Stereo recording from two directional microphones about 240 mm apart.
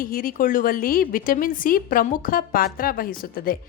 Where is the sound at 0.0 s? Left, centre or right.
Left.